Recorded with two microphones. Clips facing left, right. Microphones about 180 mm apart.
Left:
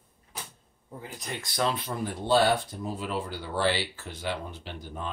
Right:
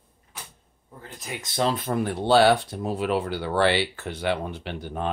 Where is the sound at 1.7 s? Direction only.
45° right (ahead or behind).